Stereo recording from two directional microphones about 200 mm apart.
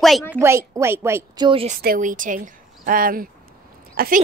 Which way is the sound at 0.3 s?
15° right (ahead or behind).